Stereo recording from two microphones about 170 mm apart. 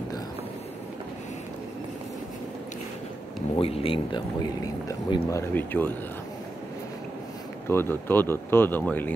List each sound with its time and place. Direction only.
3.5 s speech: 35° left (ahead or behind); by 5.9 s 10° left (ahead or behind)
7.6 s speech: 15° left (ahead or behind)